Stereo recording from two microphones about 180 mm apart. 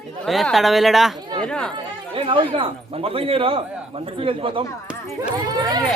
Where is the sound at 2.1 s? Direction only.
30° right (ahead or behind).